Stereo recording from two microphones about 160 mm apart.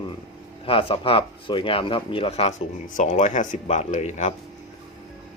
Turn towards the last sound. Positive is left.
turn(degrees=45)  # may be behind; listen again after turning